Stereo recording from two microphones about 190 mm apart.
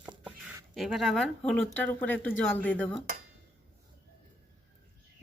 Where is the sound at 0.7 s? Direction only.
Centre (ahead or behind).